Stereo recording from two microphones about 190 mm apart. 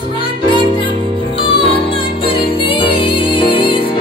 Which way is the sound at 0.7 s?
25° left (ahead or behind).